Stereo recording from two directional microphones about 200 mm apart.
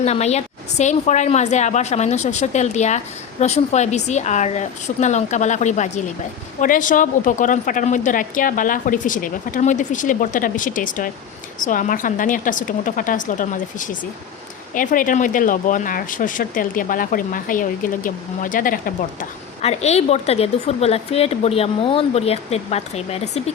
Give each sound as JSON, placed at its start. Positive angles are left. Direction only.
{"t": 0.0, "sound": "a woman's voice", "side_deg": 35}
{"t": 19.6, "sound": "a woman's voice", "side_deg": 35}